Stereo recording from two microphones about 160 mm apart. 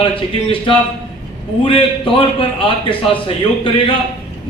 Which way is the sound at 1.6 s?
35° left (ahead or behind).